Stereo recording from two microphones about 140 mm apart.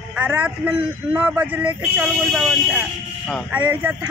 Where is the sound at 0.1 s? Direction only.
10° right (ahead or behind).